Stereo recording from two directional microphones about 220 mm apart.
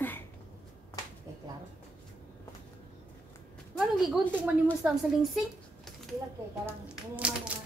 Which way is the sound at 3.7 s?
Centre (ahead or behind).